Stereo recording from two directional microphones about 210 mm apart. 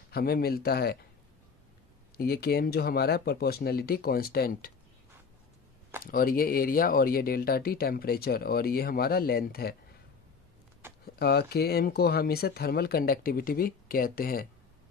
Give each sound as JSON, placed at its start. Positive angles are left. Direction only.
{"t": 0.1, "sound": "speech", "side_deg": 45}
{"t": 2.1, "sound": "speech", "side_deg": 45}
{"t": 6.0, "sound": "speech", "side_deg": 45}
{"t": 10.8, "sound": "a sound", "side_deg": -10}
{"t": 11.1, "sound": "speech", "side_deg": 50}